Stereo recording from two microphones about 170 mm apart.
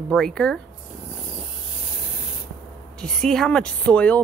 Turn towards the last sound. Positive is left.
turn(degrees=5)  # may be behind; listen again after turning